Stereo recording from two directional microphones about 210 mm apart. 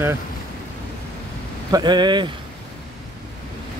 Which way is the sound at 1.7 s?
20° right (ahead or behind).